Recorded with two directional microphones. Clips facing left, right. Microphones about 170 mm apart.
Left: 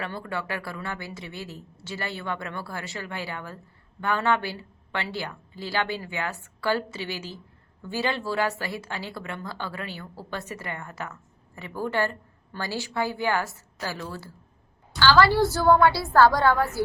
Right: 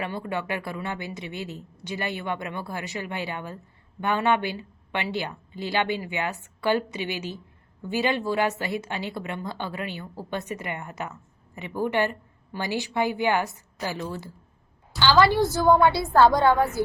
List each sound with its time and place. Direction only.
0.0 s a woman's voice: 20° right (ahead or behind)